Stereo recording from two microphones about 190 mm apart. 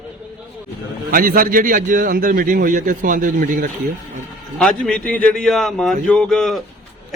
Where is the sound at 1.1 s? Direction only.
50° right (ahead or behind).